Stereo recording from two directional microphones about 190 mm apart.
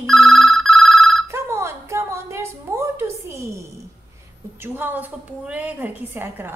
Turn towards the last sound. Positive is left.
turn(degrees=-10)  # may be behind; listen again after turning